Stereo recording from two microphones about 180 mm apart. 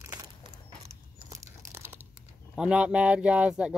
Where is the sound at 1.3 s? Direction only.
15° right (ahead or behind).